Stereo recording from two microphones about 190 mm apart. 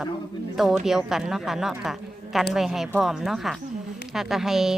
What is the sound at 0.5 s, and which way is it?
A woman's voice, centre (ahead or behind).